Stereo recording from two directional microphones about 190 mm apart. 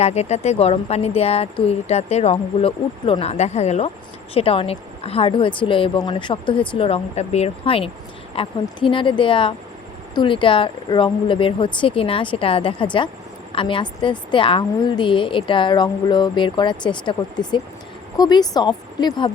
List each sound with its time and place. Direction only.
0.0 s a woman's voice: 35° left (ahead or behind)